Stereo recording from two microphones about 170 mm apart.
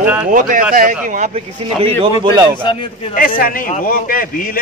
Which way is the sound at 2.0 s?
25° right (ahead or behind).